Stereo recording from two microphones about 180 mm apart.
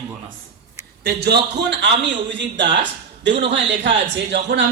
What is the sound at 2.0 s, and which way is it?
A man's voice, 90° right.